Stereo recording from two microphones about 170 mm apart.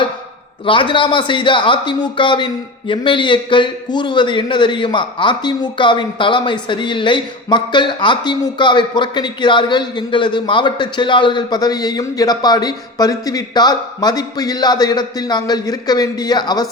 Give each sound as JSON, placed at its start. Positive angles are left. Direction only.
{"t": 0.6, "sound": "speech", "side_deg": 30}